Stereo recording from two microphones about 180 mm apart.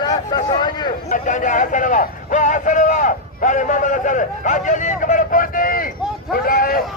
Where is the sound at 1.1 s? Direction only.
45° left (ahead or behind).